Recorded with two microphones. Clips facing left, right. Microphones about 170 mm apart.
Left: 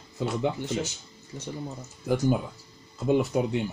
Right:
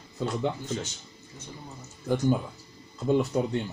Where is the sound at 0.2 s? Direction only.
10° left (ahead or behind).